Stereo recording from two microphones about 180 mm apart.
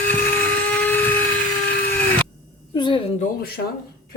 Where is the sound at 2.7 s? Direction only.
25° left (ahead or behind).